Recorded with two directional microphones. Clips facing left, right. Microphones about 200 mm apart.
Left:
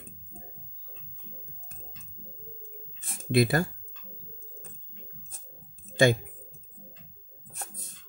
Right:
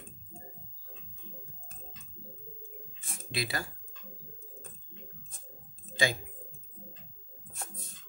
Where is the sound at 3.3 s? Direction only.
50° left (ahead or behind).